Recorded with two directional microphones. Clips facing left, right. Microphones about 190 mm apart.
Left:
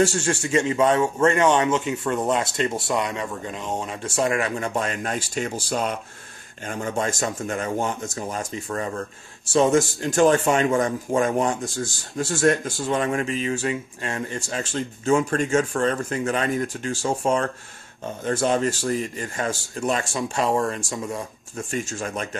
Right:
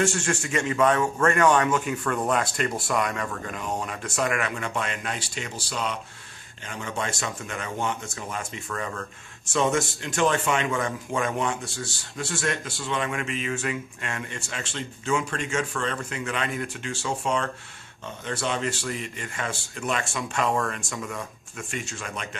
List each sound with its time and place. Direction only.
0.0 s a man's voice: 30° left (ahead or behind)